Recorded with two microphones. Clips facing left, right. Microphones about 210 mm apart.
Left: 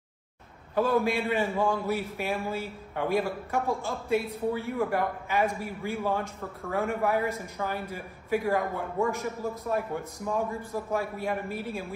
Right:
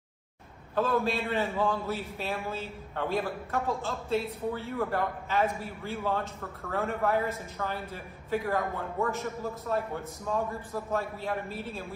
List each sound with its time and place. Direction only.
0.7 s a man's voice: 15° left (ahead or behind)